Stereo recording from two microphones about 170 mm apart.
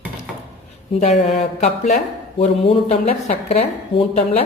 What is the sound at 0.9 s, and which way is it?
A woman's voice, 40° left (ahead or behind).